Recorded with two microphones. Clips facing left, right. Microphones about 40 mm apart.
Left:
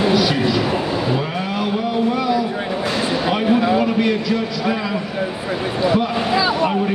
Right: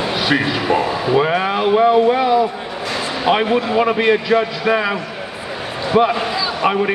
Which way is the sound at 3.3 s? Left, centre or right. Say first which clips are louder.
Right 2 dB; right.